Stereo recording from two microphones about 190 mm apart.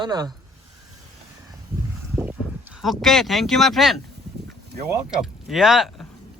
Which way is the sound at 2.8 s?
Centre (ahead or behind).